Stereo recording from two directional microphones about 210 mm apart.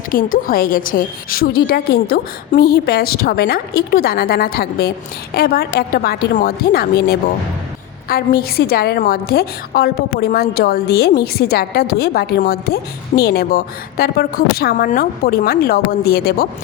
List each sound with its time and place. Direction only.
0.1 s a woman's voice: 40° left (ahead or behind)